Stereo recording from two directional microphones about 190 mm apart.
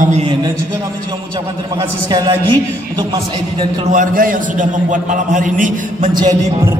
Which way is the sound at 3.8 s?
45° right (ahead or behind).